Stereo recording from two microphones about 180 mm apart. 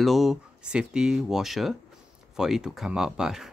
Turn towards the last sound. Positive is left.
turn(degrees=0)  # may be behind; listen again after turning